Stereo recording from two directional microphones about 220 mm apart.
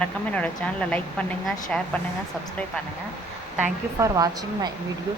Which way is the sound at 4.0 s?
15° right (ahead or behind).